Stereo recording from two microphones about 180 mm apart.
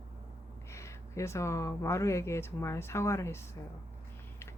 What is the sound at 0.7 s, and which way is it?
Speech, 15° left (ahead or behind).